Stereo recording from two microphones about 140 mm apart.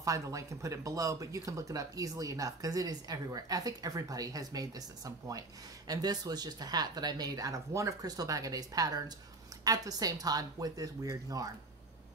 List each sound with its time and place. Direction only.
0.0 s speech: 25° right (ahead or behind)